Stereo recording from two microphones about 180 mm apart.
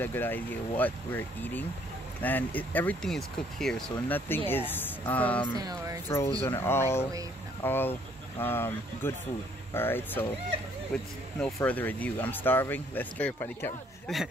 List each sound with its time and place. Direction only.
0.0 s speech: 10° left (ahead or behind)
5.6 s speech: 20° right (ahead or behind)
6.0 s speech: 15° left (ahead or behind)